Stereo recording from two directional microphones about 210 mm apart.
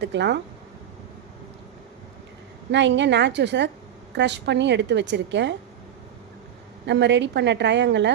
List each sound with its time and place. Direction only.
0.0 s a woman's voice: 55° right (ahead or behind)
2.7 s a woman's voice: 55° right (ahead or behind)
6.8 s a woman's voice: 55° right (ahead or behind)